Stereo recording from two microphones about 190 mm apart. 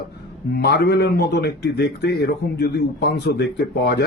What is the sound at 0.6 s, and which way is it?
A man's voice, 55° left (ahead or behind).